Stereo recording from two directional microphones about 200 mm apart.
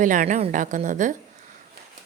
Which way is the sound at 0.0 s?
40° right (ahead or behind).